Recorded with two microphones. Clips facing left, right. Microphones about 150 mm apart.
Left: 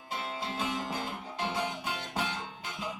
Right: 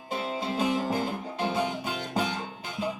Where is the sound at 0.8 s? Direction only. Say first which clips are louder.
Right 8 dB; 50° right (ahead or behind).